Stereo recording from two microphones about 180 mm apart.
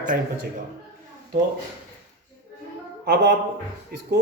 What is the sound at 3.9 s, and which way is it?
Speech, 60° right (ahead or behind).